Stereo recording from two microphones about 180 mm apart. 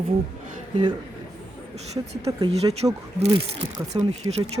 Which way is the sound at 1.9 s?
35° right (ahead or behind).